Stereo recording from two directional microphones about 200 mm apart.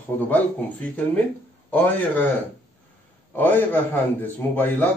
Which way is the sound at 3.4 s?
10° left (ahead or behind).